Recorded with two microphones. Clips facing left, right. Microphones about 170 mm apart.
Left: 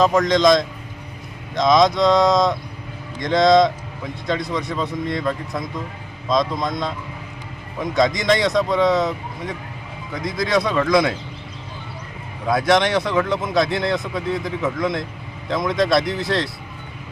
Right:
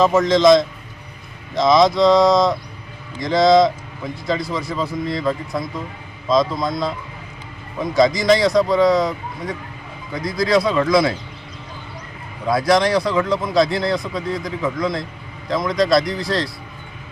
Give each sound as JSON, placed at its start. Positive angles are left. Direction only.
{"t": 0.0, "sound": "a man's voice", "side_deg": -5}
{"t": 7.9, "sound": "a man's voice", "side_deg": 0}
{"t": 12.5, "sound": "a man's voice", "side_deg": 0}